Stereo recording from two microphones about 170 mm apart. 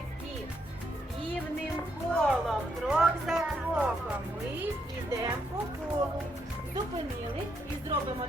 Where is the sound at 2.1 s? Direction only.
Centre (ahead or behind).